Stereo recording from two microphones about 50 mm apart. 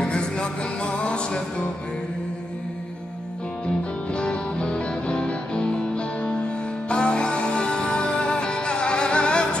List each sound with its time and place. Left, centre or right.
0.0 s music: centre
3.6 s music: left